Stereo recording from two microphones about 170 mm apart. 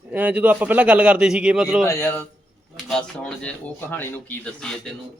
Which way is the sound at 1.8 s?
15° left (ahead or behind).